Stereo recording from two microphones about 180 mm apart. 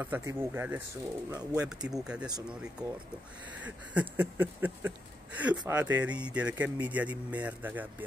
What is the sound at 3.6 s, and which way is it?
Speech, 10° right (ahead or behind).